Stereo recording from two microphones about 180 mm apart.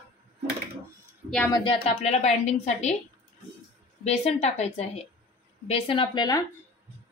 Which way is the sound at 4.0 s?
35° left (ahead or behind).